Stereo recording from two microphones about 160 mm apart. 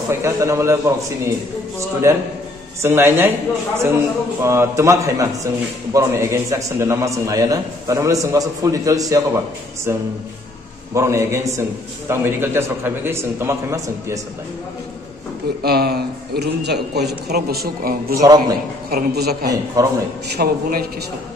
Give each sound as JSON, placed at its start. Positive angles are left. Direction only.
{"t": 0.1, "sound": "a man's voice", "side_deg": -15}
{"t": 15.6, "sound": "a man's voice", "side_deg": -80}
{"t": 17.3, "sound": "a man's voice", "side_deg": -80}
{"t": 18.2, "sound": "a man's voice", "side_deg": -25}
{"t": 18.9, "sound": "a man's voice", "side_deg": -80}
{"t": 19.8, "sound": "a man's voice", "side_deg": -20}
{"t": 20.4, "sound": "a man's voice", "side_deg": -70}